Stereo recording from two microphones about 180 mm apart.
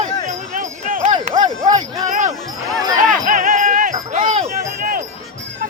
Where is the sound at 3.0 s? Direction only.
45° right (ahead or behind).